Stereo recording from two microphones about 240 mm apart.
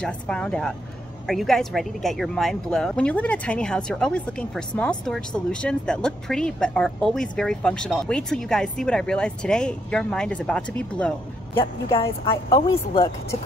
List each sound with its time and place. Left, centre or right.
0.0 s a woman's voice: centre